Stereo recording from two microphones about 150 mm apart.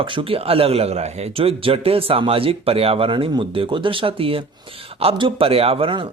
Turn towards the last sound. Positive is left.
turn(degrees=-35)  # may be behind; listen again after turning